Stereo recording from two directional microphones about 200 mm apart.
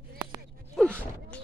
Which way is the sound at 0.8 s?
5° left (ahead or behind).